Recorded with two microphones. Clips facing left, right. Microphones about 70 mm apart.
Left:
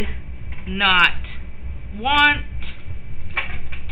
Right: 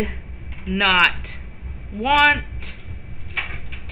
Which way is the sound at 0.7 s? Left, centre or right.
Centre.